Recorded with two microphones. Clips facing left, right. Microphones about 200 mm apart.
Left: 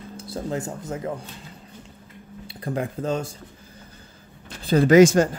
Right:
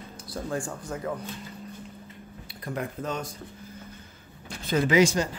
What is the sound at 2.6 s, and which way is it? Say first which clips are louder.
Speech: left 5 dB; 30° left (ahead or behind).